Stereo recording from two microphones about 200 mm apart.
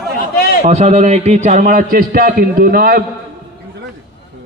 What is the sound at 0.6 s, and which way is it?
A man's voice, 35° right (ahead or behind).